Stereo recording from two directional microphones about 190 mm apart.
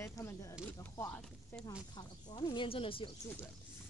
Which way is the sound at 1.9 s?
20° left (ahead or behind).